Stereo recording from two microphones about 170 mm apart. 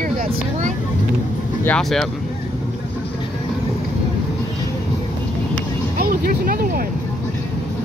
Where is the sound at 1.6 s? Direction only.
5° left (ahead or behind).